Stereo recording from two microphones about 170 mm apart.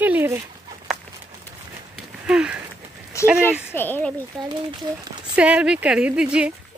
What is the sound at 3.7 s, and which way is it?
Speech, 10° left (ahead or behind).